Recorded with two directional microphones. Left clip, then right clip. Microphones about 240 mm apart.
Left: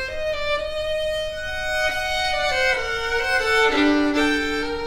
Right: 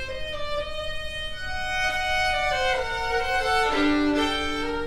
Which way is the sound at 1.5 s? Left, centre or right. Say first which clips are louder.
Left 2 dB; left.